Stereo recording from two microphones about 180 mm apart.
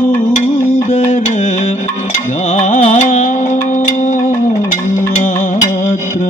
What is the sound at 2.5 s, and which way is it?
Music, 45° left (ahead or behind).